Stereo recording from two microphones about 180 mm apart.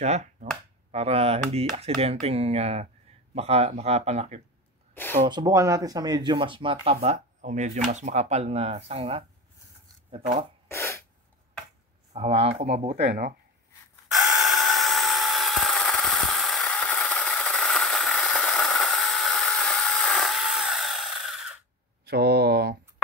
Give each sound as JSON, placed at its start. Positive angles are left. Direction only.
{"t": 0.0, "sound": "speech", "side_deg": -40}
{"t": 5.2, "sound": "speech", "side_deg": -20}
{"t": 10.7, "sound": "sneeze", "side_deg": 15}
{"t": 12.1, "sound": "speech", "side_deg": -35}
{"t": 12.8, "sound": "speech", "side_deg": -65}
{"t": 14.1, "sound": "tools", "side_deg": 0}
{"t": 22.0, "sound": "a sound", "side_deg": -65}